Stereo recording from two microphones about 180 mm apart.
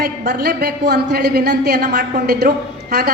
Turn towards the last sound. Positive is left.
turn(degrees=-60)  # may be behind; listen again after turning